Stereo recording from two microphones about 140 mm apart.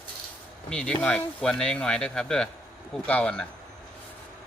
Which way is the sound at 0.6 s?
5° left (ahead or behind).